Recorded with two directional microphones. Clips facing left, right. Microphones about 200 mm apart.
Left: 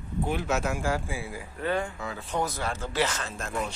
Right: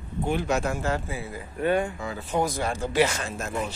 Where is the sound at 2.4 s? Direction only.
15° right (ahead or behind).